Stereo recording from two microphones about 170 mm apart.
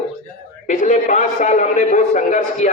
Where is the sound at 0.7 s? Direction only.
45° left (ahead or behind).